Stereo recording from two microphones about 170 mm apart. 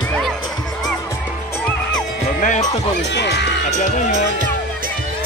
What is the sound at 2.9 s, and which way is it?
Music, 90° left.